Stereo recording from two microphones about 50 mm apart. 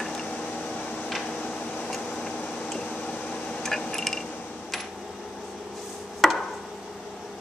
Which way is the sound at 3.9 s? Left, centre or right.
Centre.